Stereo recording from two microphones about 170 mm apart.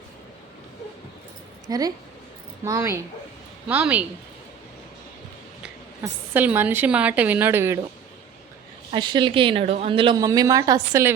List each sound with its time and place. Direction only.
1.6 s a woman's voice: 20° right (ahead or behind)
6.0 s a woman's voice: 10° right (ahead or behind)
8.9 s speech: 30° right (ahead or behind)
10.2 s a woman's voice: 20° right (ahead or behind)